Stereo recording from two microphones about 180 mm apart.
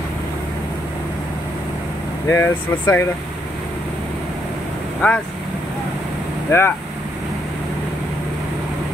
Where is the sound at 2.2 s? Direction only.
15° left (ahead or behind).